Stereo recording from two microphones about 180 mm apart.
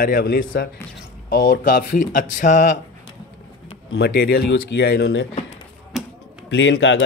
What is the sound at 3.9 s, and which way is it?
Speech, 75° left (ahead or behind).